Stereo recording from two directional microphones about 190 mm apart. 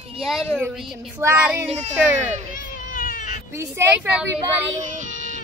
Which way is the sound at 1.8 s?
40° right (ahead or behind).